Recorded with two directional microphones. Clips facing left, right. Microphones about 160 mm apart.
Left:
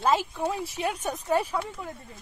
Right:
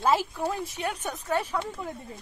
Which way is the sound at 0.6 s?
30° left (ahead or behind).